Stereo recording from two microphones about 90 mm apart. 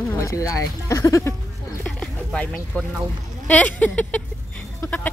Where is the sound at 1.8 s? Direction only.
10° left (ahead or behind).